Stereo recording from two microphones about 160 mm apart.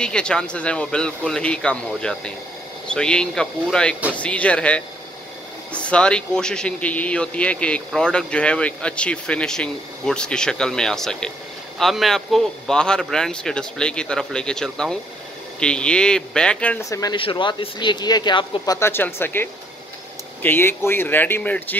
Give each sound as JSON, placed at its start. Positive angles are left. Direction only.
{"t": 0.0, "sound": "a man's voice", "side_deg": 5}
{"t": 17.0, "sound": "speech", "side_deg": 30}
{"t": 18.8, "sound": "speech", "side_deg": 15}